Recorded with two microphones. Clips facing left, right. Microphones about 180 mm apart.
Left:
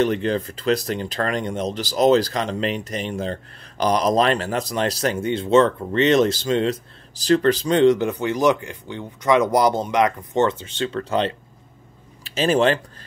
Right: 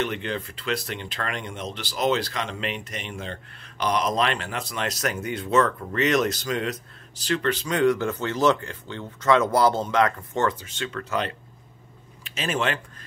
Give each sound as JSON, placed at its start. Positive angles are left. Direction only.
{"t": 0.0, "sound": "speech", "side_deg": 35}